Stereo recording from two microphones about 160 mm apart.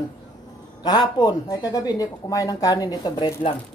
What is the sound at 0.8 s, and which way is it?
Speech, 25° left (ahead or behind).